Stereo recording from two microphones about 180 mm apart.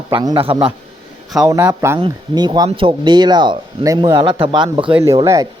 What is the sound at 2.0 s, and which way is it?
Speech, 25° right (ahead or behind).